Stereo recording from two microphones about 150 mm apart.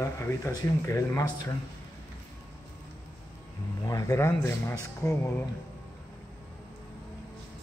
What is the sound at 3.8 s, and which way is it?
Speech, 25° left (ahead or behind).